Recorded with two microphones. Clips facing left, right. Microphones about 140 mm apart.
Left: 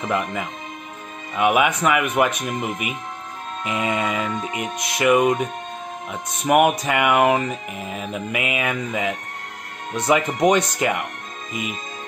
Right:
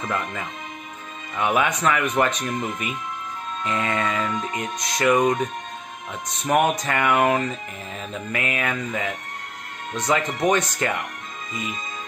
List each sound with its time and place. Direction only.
0.0 s speech: 15° left (ahead or behind)